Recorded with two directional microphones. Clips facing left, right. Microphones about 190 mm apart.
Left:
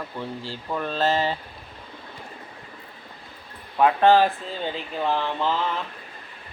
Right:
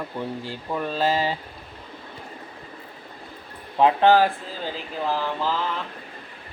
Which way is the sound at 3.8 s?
25° right (ahead or behind).